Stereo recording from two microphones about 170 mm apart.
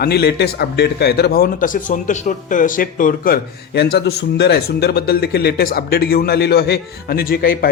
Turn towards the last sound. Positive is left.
turn(degrees=60)  # may be behind; listen again after turning